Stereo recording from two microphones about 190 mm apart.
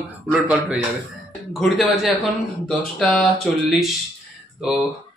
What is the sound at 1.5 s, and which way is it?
Speech, centre (ahead or behind).